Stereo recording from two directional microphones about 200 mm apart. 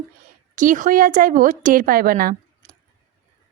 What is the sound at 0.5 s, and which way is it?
Speech, 40° right (ahead or behind).